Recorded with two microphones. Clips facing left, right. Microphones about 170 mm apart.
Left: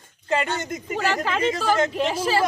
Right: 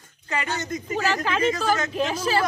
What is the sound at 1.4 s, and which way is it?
Speech, 30° left (ahead or behind).